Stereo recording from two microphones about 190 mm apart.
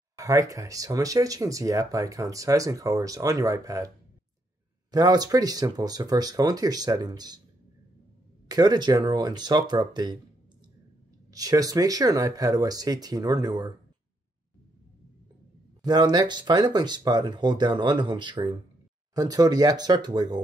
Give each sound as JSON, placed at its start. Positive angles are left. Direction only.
{"t": 0.2, "sound": "speech", "side_deg": -15}
{"t": 4.9, "sound": "speech", "side_deg": -20}
{"t": 8.5, "sound": "speech", "side_deg": -20}
{"t": 11.3, "sound": "speech", "side_deg": -20}
{"t": 15.8, "sound": "speech", "side_deg": -20}